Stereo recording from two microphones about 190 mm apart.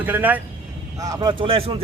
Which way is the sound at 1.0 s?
20° right (ahead or behind).